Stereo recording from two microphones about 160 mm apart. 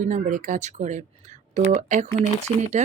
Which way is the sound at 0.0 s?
50° right (ahead or behind).